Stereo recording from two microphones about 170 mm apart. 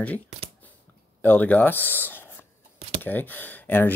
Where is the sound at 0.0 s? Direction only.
10° left (ahead or behind).